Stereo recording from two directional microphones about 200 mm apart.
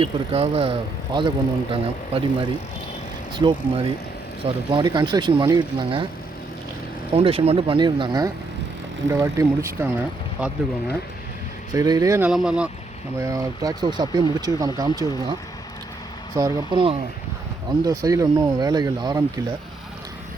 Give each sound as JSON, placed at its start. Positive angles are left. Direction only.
{"t": 0.0, "sound": "speech", "side_deg": -30}
{"t": 7.1, "sound": "speech", "side_deg": -30}
{"t": 11.7, "sound": "speech", "side_deg": -20}
{"t": 12.3, "sound": "speech", "side_deg": -5}
{"t": 13.1, "sound": "speech", "side_deg": -15}
{"t": 16.3, "sound": "speech", "side_deg": -15}